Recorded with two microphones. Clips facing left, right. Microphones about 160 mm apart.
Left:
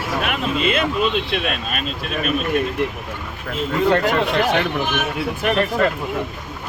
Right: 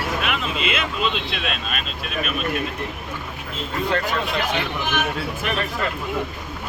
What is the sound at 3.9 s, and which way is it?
Speech, 65° left (ahead or behind).